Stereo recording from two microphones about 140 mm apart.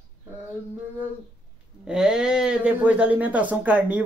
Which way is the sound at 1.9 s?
5° right (ahead or behind).